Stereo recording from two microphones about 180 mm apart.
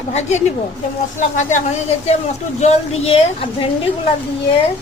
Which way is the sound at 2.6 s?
35° left (ahead or behind).